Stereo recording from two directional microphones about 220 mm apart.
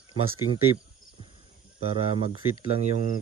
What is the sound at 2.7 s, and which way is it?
Speech, 30° right (ahead or behind).